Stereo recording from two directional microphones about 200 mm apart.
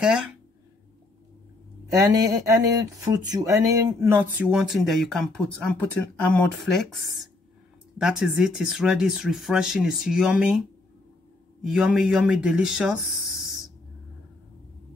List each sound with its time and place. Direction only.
0.0 s speech: 5° right (ahead or behind)
2.0 s speech: 15° right (ahead or behind); by 7.0 s centre (ahead or behind)
8.0 s speech: 5° right (ahead or behind)
11.6 s speech: 5° right (ahead or behind)